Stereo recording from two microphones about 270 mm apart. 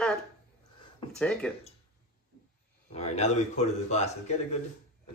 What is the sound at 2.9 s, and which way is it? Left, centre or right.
Speech, left.